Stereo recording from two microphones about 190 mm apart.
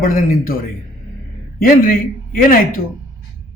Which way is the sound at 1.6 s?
50° left (ahead or behind).